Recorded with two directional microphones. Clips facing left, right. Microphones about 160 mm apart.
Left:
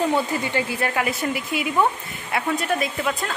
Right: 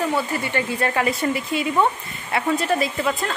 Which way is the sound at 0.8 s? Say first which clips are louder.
Right 2 dB; centre (ahead or behind).